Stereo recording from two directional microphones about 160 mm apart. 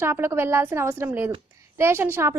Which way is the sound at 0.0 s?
15° right (ahead or behind).